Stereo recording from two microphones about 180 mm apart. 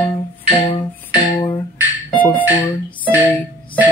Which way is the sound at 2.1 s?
10° left (ahead or behind).